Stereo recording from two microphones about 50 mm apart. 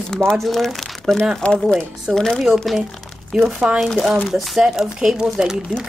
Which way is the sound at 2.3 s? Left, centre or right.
Centre.